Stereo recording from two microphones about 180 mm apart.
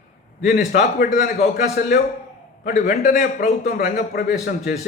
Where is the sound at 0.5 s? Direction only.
55° left (ahead or behind).